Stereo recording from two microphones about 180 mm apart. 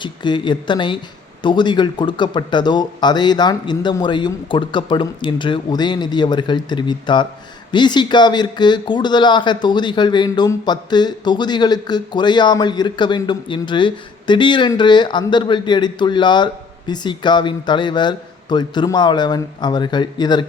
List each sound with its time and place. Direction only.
0.0 s speech: 25° left (ahead or behind)